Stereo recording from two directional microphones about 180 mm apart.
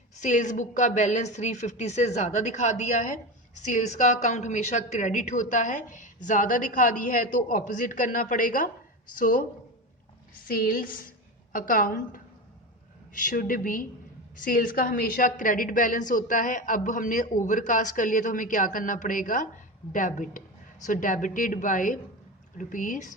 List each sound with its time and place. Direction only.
0.2 s a woman's voice: 45° left (ahead or behind)
10.5 s a woman's voice: 55° left (ahead or behind)